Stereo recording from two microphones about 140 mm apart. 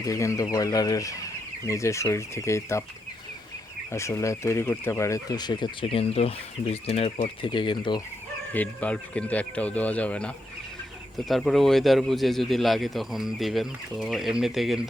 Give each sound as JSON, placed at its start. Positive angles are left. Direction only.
{"t": 0.0, "sound": "speech", "side_deg": 20}
{"t": 3.9, "sound": "speech", "side_deg": 20}
{"t": 7.4, "sound": "speech", "side_deg": 35}
{"t": 8.5, "sound": "speech", "side_deg": 10}